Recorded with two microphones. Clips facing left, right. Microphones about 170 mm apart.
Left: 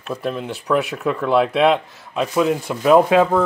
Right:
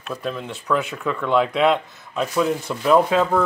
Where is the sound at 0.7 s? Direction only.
25° left (ahead or behind).